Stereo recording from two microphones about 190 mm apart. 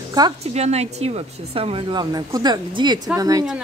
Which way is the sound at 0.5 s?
35° right (ahead or behind).